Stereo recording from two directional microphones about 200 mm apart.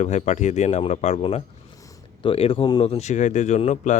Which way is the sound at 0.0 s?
35° left (ahead or behind).